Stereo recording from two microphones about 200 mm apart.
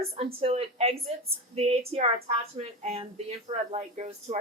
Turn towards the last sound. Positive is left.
turn(degrees=-35)  # may be behind; listen again after turning